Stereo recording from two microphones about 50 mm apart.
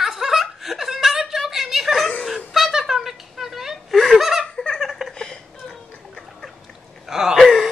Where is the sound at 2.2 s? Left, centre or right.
Centre.